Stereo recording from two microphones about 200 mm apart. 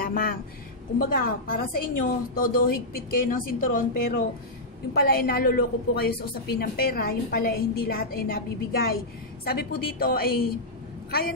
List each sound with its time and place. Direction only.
0.0 s a woman's voice: 45° left (ahead or behind)